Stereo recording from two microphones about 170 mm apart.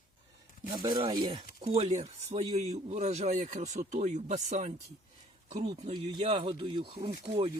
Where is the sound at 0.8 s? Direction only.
30° right (ahead or behind); by 5.9 s 45° right (ahead or behind).